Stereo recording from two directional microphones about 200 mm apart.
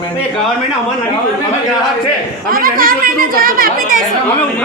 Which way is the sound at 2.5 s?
45° right (ahead or behind).